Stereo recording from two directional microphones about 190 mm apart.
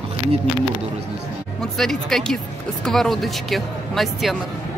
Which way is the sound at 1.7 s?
Centre (ahead or behind).